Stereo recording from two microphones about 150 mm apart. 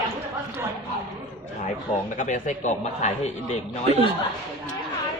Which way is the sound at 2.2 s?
55° left (ahead or behind).